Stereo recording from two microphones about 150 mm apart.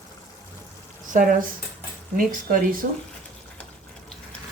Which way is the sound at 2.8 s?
90° right.